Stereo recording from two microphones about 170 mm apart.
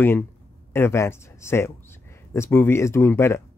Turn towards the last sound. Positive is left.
turn(degrees=15)  # may be behind; listen again after turning